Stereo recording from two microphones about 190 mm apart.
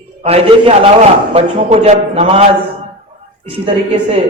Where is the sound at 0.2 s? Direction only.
30° right (ahead or behind).